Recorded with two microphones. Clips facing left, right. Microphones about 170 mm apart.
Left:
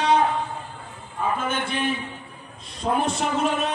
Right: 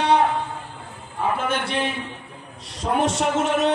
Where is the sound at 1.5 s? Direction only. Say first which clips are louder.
Right 1 dB; 75° right (ahead or behind).